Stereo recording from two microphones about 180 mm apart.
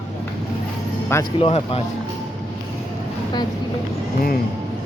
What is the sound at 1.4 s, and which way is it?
Speech, 35° left (ahead or behind).